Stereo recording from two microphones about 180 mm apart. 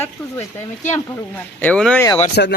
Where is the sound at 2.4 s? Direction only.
65° left (ahead or behind).